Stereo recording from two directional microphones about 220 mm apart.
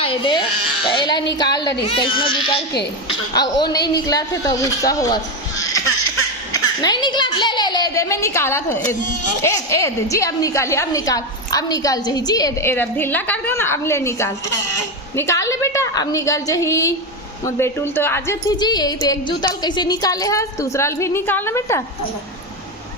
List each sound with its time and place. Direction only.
0.0 s a woman's voice: 25° left (ahead or behind)